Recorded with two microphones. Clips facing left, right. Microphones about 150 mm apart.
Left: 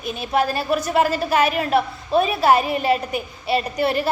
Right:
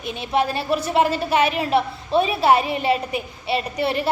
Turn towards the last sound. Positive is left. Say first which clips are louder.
# left 2 dB
turn(degrees=-25)  # may be behind; listen again after turning